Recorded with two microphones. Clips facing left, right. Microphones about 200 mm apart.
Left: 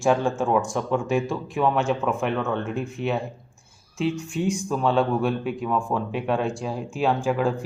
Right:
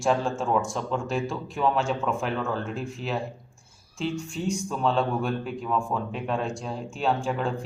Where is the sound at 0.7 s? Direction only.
65° left (ahead or behind).